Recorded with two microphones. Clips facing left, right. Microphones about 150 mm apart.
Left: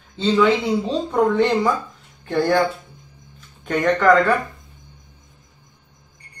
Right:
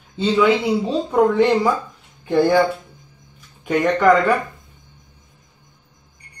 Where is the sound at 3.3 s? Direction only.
10° right (ahead or behind).